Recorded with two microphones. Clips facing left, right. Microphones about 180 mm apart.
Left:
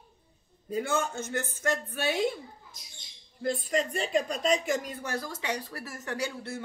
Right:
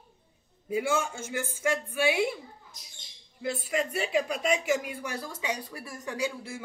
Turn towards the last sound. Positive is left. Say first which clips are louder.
# right 1 dB
turn(degrees=-10)  # may be behind; listen again after turning